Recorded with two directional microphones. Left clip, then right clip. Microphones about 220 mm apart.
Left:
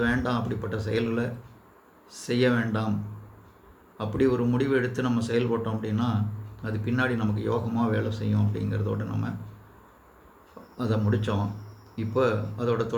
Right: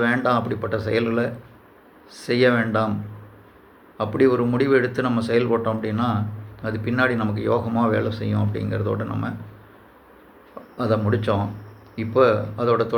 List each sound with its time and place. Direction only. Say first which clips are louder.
0.0 s speech: right 7 dB; 15° left (ahead or behind)
3.9 s speech: right 6 dB; 15° left (ahead or behind)
10.8 s speech: right 7 dB; 15° left (ahead or behind)